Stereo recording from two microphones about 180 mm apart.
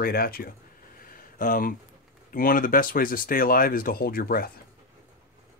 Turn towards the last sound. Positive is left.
turn(degrees=55)  # may be behind; listen again after turning